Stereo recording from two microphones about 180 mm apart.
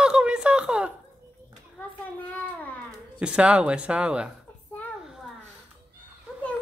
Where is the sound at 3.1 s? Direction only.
5° right (ahead or behind).